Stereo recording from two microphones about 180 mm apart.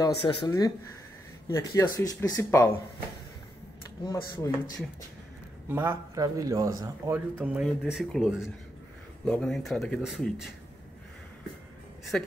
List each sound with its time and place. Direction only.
0.5 s speech: 20° left (ahead or behind)
4.0 s speech: 20° left (ahead or behind)
5.7 s a man's voice: 10° right (ahead or behind)
12.0 s speech: centre (ahead or behind)